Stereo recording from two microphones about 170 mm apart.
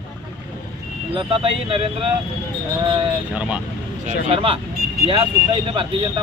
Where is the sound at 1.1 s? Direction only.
30° right (ahead or behind).